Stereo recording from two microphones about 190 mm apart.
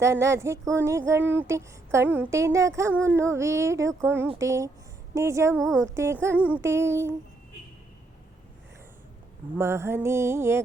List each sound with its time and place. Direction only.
0.0 s child singing: 15° right (ahead or behind)
5.5 s a woman's voice: 5° left (ahead or behind)
5.8 s child singing: 15° right (ahead or behind)
9.6 s child singing: 15° right (ahead or behind)